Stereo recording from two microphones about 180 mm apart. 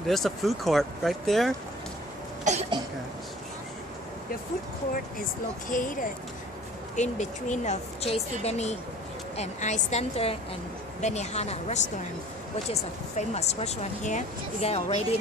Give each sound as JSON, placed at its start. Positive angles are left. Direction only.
{"t": 0.0, "sound": "speech", "side_deg": 0}
{"t": 2.5, "sound": "cough", "side_deg": -45}
{"t": 5.7, "sound": "speech", "side_deg": 45}
{"t": 7.0, "sound": "speech", "side_deg": 40}